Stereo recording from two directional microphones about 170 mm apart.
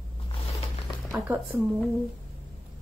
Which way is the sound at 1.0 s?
15° right (ahead or behind).